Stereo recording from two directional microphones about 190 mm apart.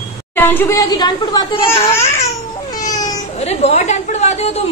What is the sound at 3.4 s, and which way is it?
A woman's voice, 35° left (ahead or behind).